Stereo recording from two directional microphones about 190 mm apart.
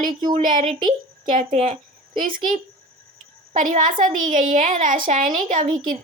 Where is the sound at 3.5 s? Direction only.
40° right (ahead or behind).